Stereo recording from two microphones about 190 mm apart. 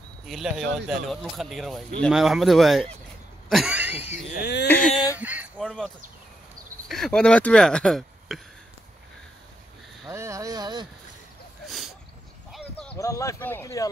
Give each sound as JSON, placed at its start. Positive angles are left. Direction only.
{"t": 0.3, "sound": "speech", "side_deg": 0}
{"t": 3.4, "sound": "cough", "side_deg": 0}
{"t": 4.4, "sound": "speech", "side_deg": 65}
{"t": 4.6, "sound": "speech", "side_deg": 5}
{"t": 5.1, "sound": "a sound", "side_deg": -10}
{"t": 5.6, "sound": "speech", "side_deg": 5}
{"t": 6.9, "sound": "speech", "side_deg": 5}
{"t": 10.0, "sound": "speech", "side_deg": -15}
{"t": 12.9, "sound": "speech", "side_deg": 15}